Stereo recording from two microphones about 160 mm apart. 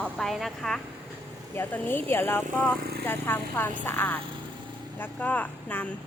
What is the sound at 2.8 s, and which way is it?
Vehicle, 75° right (ahead or behind).